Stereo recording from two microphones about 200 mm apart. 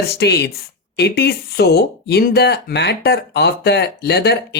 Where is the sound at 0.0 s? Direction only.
55° left (ahead or behind).